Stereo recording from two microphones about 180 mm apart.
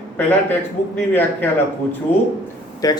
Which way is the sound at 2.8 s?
20° left (ahead or behind).